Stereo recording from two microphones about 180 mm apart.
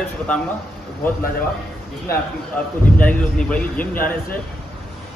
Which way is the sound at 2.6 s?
10° left (ahead or behind).